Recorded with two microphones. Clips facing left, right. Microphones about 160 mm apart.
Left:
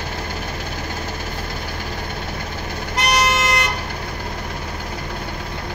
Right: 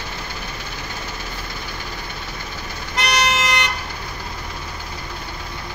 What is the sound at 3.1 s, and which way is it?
Vehicle, 40° left (ahead or behind).